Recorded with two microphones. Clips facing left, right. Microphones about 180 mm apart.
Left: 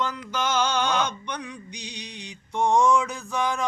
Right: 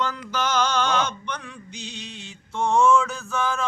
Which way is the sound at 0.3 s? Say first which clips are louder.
Right 1 dB; 10° left (ahead or behind).